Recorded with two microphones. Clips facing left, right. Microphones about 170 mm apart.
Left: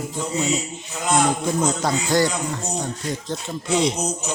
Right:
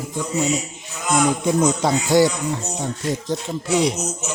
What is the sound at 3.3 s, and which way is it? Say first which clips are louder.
Speech: right 1 dB; 10° right (ahead or behind).